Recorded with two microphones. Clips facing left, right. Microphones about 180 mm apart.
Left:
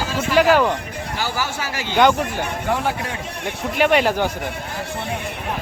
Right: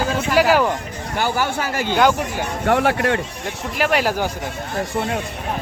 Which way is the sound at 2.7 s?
70° right (ahead or behind).